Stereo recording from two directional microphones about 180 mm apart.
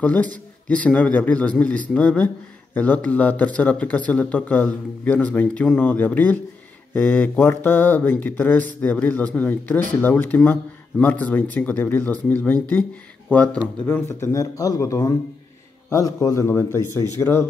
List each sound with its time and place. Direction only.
0.0 s speech: 10° left (ahead or behind)